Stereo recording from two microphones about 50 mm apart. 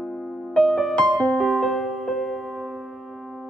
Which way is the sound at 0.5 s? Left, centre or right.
Centre.